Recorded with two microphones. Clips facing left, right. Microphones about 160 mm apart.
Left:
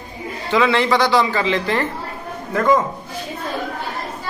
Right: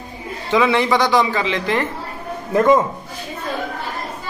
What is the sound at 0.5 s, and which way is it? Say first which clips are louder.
Speech: even; 15° right (ahead or behind).